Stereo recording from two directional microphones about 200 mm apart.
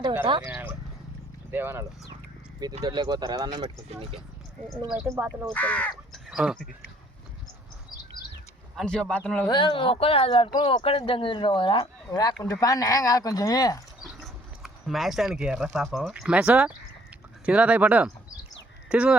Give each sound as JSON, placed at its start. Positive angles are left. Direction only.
{"t": 0.4, "sound": "speech", "side_deg": -10}
{"t": 2.8, "sound": "speech", "side_deg": -20}
{"t": 4.9, "sound": "speech", "side_deg": -5}
{"t": 5.5, "sound": "speech", "side_deg": 5}
{"t": 8.7, "sound": "speech", "side_deg": 5}
{"t": 9.5, "sound": "speech", "side_deg": 25}
{"t": 14.0, "sound": "speech", "side_deg": 0}